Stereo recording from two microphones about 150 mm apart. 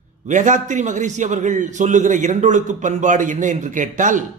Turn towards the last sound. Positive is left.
turn(degrees=-60)  # may be behind; listen again after turning